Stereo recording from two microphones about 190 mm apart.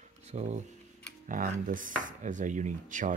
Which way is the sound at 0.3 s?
35° right (ahead or behind).